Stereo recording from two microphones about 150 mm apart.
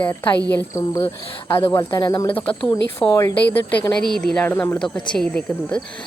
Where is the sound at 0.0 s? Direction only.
15° left (ahead or behind).